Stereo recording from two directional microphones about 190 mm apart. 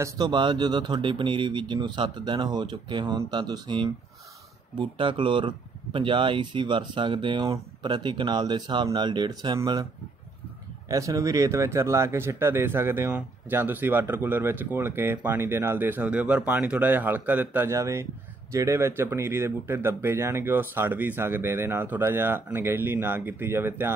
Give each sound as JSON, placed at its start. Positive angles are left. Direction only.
{"t": 0.0, "sound": "speech", "side_deg": -25}
{"t": 10.9, "sound": "speech", "side_deg": -15}